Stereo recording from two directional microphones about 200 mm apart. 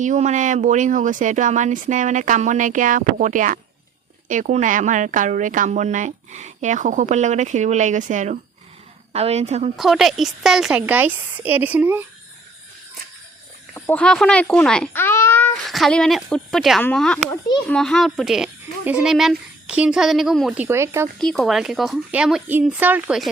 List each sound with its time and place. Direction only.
0.0 s a woman's voice: 35° right (ahead or behind)
9.7 s a woman's voice: centre (ahead or behind)
13.7 s speech: 10° left (ahead or behind)
15.6 s speech: centre (ahead or behind)
21.2 s speech: centre (ahead or behind)